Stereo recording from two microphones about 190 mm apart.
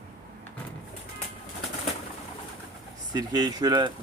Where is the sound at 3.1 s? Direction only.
20° right (ahead or behind).